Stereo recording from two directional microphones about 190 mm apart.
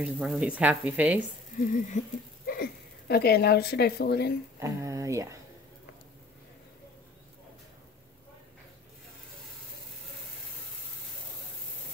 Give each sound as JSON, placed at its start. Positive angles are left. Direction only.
{"t": 0.0, "sound": "speech", "side_deg": 0}
{"t": 1.6, "sound": "a sound", "side_deg": 45}
{"t": 2.4, "sound": "speech", "side_deg": 55}
{"t": 4.6, "sound": "speech", "side_deg": -15}